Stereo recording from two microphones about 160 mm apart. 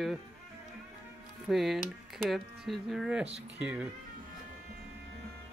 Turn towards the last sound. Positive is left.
turn(degrees=-10)  # may be behind; listen again after turning